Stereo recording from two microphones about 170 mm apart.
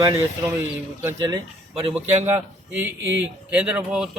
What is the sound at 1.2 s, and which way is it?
Speech, 25° right (ahead or behind).